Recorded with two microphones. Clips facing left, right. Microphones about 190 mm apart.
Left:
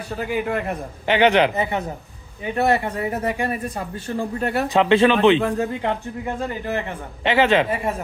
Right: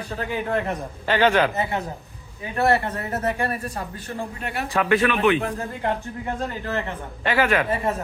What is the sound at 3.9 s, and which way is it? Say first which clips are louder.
Speech: left 6 dB; 35° left (ahead or behind).